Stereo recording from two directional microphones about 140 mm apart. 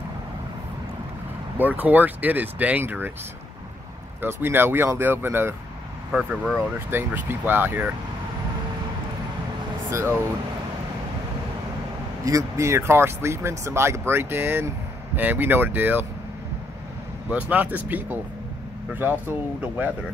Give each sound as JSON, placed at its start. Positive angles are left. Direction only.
{"t": 1.6, "sound": "speech", "side_deg": -10}
{"t": 4.2, "sound": "speech", "side_deg": -15}
{"t": 6.1, "sound": "speech", "side_deg": 0}
{"t": 6.9, "sound": "speech", "side_deg": -15}
{"t": 9.8, "sound": "speech", "side_deg": -20}
{"t": 12.3, "sound": "speech", "side_deg": -20}
{"t": 17.3, "sound": "speech", "side_deg": -10}